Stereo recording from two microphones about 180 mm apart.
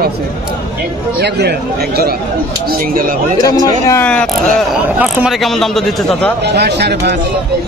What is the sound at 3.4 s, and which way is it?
Speech, 20° left (ahead or behind).